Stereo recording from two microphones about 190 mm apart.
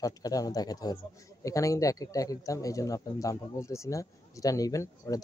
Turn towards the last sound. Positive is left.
turn(degrees=20)  # may be behind; listen again after turning